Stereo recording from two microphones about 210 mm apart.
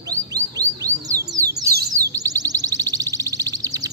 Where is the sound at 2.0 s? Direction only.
15° right (ahead or behind).